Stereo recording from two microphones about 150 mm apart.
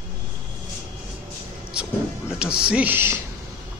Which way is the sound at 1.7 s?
5° right (ahead or behind).